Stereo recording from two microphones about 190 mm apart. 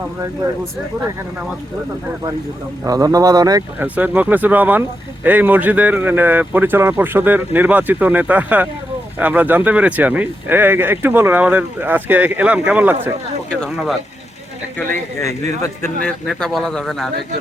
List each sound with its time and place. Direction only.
2.8 s speech: 20° right (ahead or behind)
3.8 s speech: 10° right (ahead or behind)
15.2 s a man's voice: 15° left (ahead or behind)
16.0 s speech: centre (ahead or behind)